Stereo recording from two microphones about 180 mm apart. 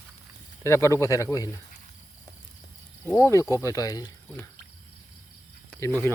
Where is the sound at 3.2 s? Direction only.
15° left (ahead or behind).